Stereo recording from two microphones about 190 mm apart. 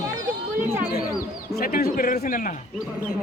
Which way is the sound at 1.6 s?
50° left (ahead or behind).